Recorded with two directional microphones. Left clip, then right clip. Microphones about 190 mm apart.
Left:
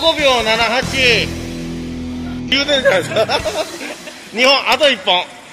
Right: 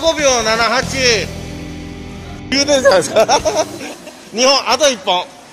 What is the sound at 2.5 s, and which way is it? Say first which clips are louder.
Speech: right 2 dB; 30° right (ahead or behind).